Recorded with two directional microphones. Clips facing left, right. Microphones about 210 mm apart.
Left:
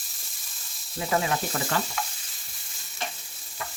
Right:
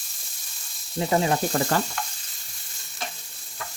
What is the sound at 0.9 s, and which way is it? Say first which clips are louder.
Frying: right 4 dB; 30° right (ahead or behind).